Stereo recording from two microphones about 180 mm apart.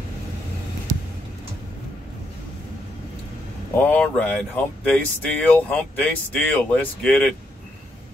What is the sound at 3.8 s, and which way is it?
Speech, 10° left (ahead or behind).